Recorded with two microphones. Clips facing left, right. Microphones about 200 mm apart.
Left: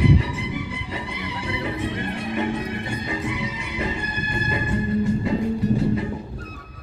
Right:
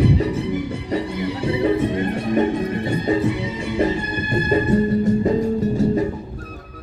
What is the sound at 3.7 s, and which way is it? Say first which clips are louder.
Music: right 8 dB; 45° right (ahead or behind).